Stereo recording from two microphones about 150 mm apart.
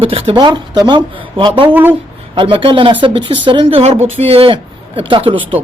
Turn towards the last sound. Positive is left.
turn(degrees=-35)  # may be behind; listen again after turning